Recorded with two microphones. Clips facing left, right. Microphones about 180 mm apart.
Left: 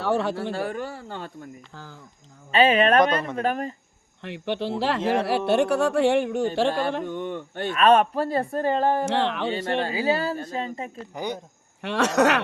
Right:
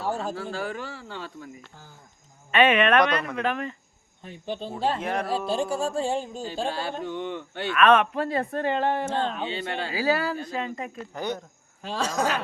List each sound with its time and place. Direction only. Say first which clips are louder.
0.0 s speech: left 5 dB; 75° left (ahead or behind)
0.6 s speech: left 3 dB; 50° left (ahead or behind)
1.7 s speech: left 7 dB; 90° left
2.5 s speech: left 1 dB; 30° left (ahead or behind)
4.2 s speech: left 5 dB; 75° left (ahead or behind)
5.5 s speech: left 6 dB; 70° left (ahead or behind)
7.0 s speech: left 1 dB; 50° left (ahead or behind)
7.8 s speech: left 1 dB; 35° left (ahead or behind)
9.0 s speech: left 3 dB; 80° left
9.5 s speech: left 6 dB; 40° left (ahead or behind)
9.9 s speech: left 1 dB; 25° left (ahead or behind)
10.3 s speech: left 1 dB; 35° left (ahead or behind)
11.1 s speech: even; 15° left (ahead or behind)
11.8 s speech: left 6 dB; 70° left (ahead or behind)